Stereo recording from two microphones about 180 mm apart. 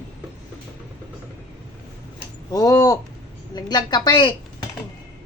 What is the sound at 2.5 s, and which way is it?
A woman's voice, 20° left (ahead or behind).